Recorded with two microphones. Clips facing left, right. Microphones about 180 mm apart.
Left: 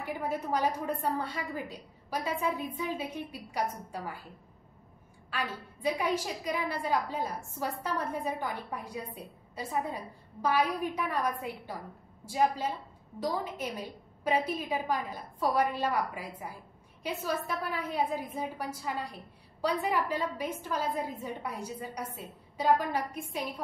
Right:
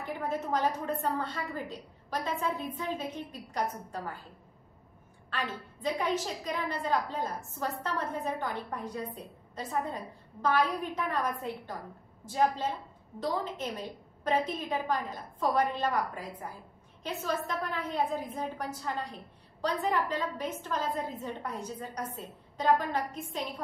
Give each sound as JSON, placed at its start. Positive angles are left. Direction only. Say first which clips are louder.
{"t": 0.0, "sound": "a woman's voice", "louder": "even", "side_deg": 10}
{"t": 5.3, "sound": "a woman's voice", "louder": "even", "side_deg": 10}